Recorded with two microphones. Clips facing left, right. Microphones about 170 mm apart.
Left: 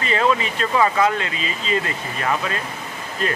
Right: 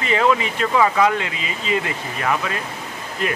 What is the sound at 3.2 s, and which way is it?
Speech, 15° right (ahead or behind).